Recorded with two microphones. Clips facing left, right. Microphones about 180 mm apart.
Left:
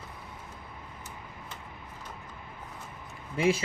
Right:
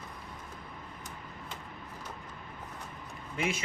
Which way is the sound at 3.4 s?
30° left (ahead or behind).